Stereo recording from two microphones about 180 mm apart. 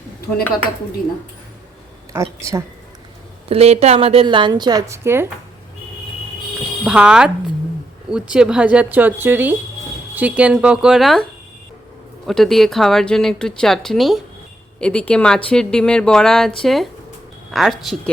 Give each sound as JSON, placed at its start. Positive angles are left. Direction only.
{"t": 2.4, "sound": "a woman's voice", "side_deg": -15}
{"t": 3.5, "sound": "a woman's voice", "side_deg": -35}
{"t": 6.8, "sound": "a woman's voice", "side_deg": -5}